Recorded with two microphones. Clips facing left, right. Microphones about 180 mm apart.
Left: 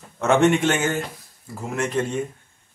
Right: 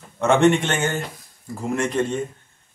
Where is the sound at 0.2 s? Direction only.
5° left (ahead or behind).